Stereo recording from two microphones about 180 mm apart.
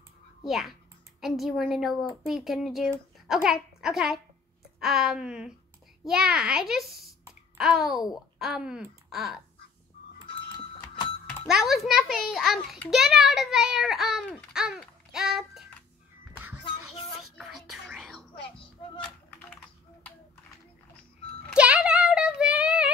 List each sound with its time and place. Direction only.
0.5 s a child's voice: centre (ahead or behind)
11.4 s a child's voice: centre (ahead or behind)
16.6 s child singing: 30° left (ahead or behind)
17.4 s whispering: centre (ahead or behind)
21.5 s a sound: 5° right (ahead or behind)